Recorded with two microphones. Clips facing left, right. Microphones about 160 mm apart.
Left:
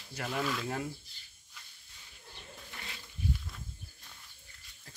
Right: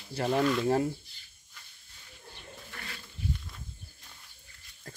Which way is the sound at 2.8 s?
20° left (ahead or behind).